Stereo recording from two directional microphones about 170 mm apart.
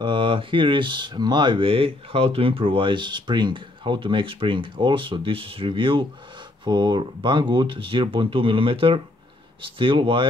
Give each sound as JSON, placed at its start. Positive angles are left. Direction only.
{"t": 0.0, "sound": "speech", "side_deg": -30}